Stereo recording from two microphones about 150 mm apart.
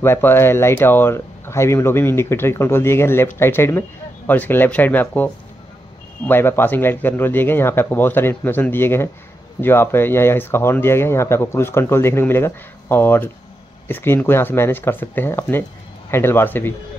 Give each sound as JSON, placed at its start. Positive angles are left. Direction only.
{"t": 0.0, "sound": "speech", "side_deg": 15}